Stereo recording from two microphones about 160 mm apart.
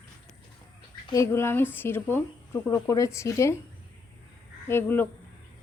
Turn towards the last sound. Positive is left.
turn(degrees=15)  # may be behind; listen again after turning